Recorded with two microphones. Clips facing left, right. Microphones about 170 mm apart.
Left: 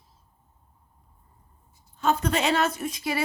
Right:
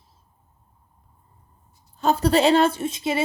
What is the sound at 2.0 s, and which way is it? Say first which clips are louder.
A woman's voice: right 6 dB; 35° right (ahead or behind).